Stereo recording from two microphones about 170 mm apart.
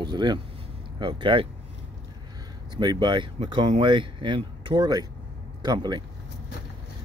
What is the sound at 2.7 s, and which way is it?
Speech, 25° right (ahead or behind).